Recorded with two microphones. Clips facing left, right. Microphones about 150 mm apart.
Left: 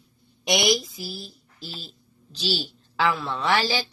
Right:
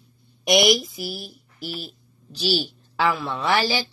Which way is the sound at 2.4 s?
15° right (ahead or behind).